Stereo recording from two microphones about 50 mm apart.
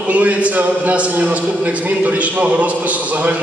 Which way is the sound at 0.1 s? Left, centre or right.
Right.